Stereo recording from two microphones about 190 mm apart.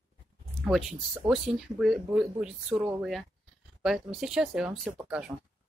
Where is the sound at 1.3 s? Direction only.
Centre (ahead or behind).